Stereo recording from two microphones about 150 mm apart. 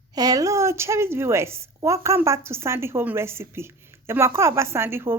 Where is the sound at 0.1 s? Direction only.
25° right (ahead or behind).